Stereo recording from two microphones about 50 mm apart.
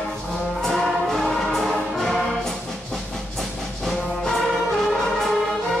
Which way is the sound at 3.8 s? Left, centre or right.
Centre.